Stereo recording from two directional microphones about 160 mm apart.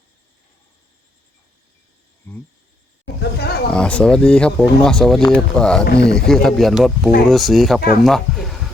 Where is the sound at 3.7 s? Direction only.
5° left (ahead or behind).